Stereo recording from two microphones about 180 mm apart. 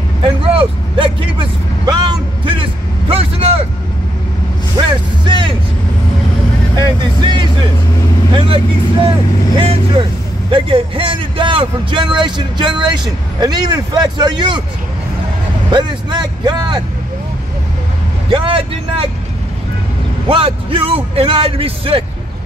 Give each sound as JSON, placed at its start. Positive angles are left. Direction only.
{"t": 0.2, "sound": "vehicle", "side_deg": -30}
{"t": 4.7, "sound": "vehicle", "side_deg": -25}
{"t": 6.8, "sound": "vehicle", "side_deg": -25}
{"t": 10.5, "sound": "a man's voice", "side_deg": -30}
{"t": 15.7, "sound": "a man's voice", "side_deg": -25}
{"t": 18.3, "sound": "a man's voice", "side_deg": -30}
{"t": 20.2, "sound": "a man's voice", "side_deg": -30}